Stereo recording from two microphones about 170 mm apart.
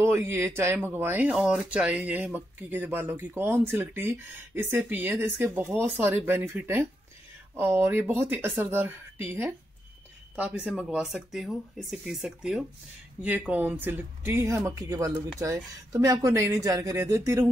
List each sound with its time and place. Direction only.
0.0 s speech: 15° right (ahead or behind)